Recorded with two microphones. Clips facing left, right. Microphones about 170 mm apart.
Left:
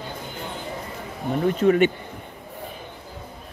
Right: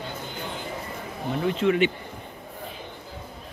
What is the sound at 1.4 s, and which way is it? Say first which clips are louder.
Speech: left 4 dB; 40° left (ahead or behind).